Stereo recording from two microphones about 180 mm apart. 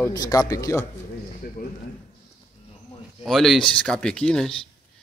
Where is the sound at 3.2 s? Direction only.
Centre (ahead or behind).